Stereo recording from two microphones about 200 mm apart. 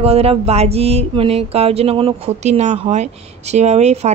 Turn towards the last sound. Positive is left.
turn(degrees=-35)  # may be behind; listen again after turning